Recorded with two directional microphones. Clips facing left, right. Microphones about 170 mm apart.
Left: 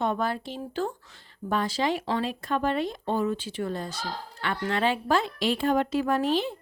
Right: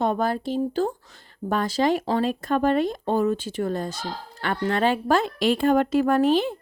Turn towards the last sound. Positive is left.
turn(degrees=-50)  # may be behind; listen again after turning